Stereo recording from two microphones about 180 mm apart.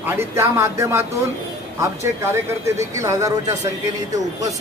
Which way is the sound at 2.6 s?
15° right (ahead or behind).